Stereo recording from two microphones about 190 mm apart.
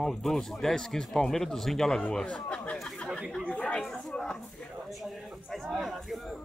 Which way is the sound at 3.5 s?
5° left (ahead or behind).